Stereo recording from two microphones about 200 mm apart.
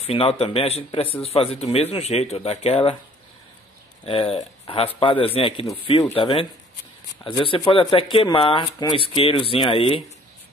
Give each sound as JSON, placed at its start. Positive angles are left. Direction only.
{"t": 0.0, "sound": "a man's voice", "side_deg": 30}
{"t": 4.0, "sound": "speech", "side_deg": 30}
{"t": 5.7, "sound": "speech", "side_deg": 20}